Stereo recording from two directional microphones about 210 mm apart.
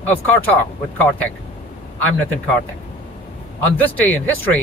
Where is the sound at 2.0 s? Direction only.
10° left (ahead or behind).